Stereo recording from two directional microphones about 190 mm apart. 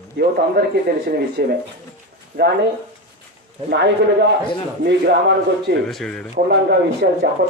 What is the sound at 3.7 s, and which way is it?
Speech, 65° right (ahead or behind).